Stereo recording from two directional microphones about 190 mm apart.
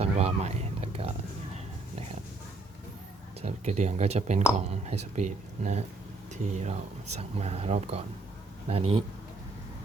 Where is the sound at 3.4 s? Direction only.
35° right (ahead or behind).